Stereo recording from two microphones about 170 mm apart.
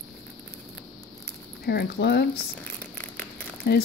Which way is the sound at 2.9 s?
10° left (ahead or behind).